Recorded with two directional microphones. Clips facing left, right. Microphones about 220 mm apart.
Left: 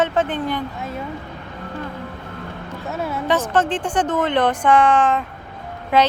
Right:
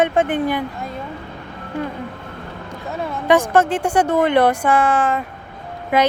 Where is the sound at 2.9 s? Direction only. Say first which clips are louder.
Even; 5° left (ahead or behind).